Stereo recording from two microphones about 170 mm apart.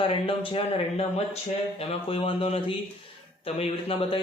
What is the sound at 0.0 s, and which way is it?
A man's voice, 35° left (ahead or behind).